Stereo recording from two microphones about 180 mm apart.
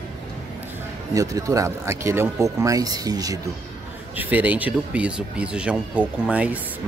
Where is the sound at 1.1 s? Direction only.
20° right (ahead or behind).